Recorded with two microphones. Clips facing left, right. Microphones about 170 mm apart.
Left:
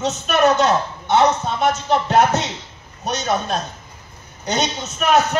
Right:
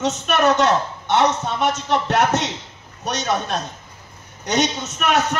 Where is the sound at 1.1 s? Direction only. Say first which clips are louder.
Left 2 dB; 90° right.